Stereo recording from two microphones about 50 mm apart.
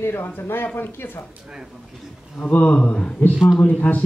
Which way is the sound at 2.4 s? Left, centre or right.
Left.